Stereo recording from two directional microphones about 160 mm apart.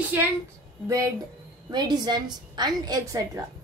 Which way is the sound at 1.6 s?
25° right (ahead or behind).